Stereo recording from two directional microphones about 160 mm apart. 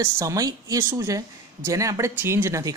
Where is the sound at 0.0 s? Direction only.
20° right (ahead or behind).